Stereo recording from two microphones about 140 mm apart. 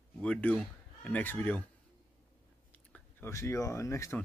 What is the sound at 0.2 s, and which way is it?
Speech, 10° left (ahead or behind).